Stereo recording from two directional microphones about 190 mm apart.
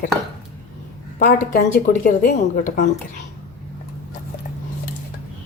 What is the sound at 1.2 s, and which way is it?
Speech, 45° left (ahead or behind).